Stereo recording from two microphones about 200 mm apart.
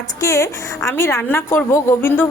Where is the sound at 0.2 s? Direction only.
15° left (ahead or behind).